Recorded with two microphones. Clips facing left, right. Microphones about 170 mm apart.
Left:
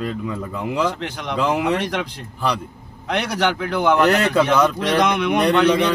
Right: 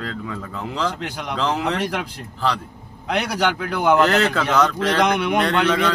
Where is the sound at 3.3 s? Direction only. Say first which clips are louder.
Left 1 dB; 5° right (ahead or behind).